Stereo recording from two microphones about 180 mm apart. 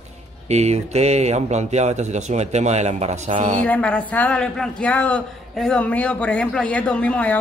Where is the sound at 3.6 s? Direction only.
10° left (ahead or behind).